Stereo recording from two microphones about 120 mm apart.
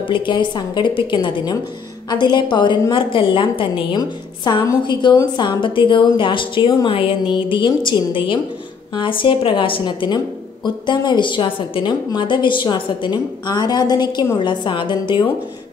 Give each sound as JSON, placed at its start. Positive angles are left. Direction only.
{"t": 0.0, "sound": "a woman's voice", "side_deg": 45}